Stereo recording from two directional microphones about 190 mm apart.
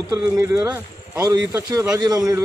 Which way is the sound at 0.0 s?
20° right (ahead or behind).